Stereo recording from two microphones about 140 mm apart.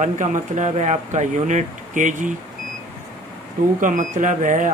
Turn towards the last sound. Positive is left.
turn(degrees=-65)  # may be behind; listen again after turning